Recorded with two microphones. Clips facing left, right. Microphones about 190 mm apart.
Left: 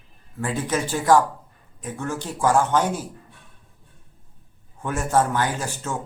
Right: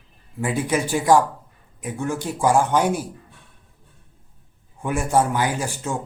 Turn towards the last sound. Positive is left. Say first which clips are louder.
# right 2 dB
turn(degrees=-15)  # may be behind; listen again after turning